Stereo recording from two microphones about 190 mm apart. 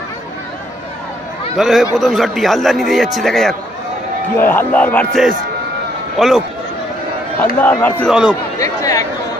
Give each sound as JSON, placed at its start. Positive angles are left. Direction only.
{"t": 1.6, "sound": "a man's voice", "side_deg": 0}
{"t": 4.4, "sound": "music", "side_deg": 10}
{"t": 6.1, "sound": "a man's voice", "side_deg": 0}
{"t": 7.6, "sound": "music", "side_deg": 10}
{"t": 8.1, "sound": "a man's voice", "side_deg": -5}
{"t": 8.5, "sound": "chatter", "side_deg": 15}